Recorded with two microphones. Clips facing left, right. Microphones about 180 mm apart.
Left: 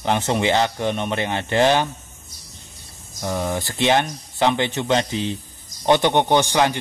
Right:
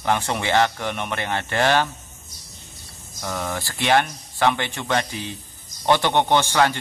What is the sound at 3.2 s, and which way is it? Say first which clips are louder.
Speech: left 4 dB; 20° left (ahead or behind).